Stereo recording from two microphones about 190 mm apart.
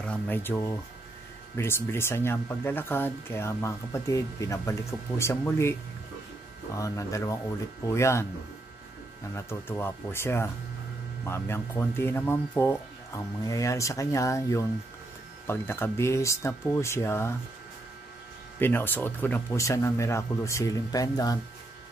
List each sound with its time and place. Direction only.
0.0 s speech: 10° left (ahead or behind)
6.8 s speech: 15° left (ahead or behind)
9.3 s speech: 10° left (ahead or behind)
18.6 s speech: 10° left (ahead or behind)